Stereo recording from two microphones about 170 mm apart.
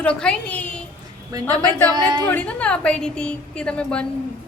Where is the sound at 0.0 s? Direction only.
5° left (ahead or behind).